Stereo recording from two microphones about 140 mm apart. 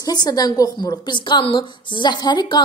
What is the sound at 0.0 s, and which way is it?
A woman's voice, 30° left (ahead or behind).